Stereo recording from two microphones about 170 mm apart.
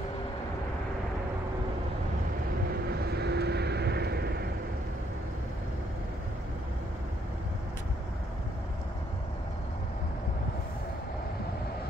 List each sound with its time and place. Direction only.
2.7 s vehicle: 70° right (ahead or behind)